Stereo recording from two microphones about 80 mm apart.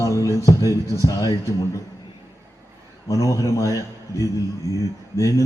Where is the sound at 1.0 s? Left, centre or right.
Left.